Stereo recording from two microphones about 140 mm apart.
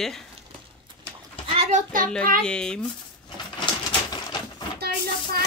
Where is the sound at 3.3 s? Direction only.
35° left (ahead or behind).